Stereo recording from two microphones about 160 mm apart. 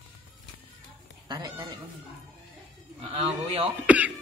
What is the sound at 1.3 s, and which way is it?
Speech, 30° right (ahead or behind).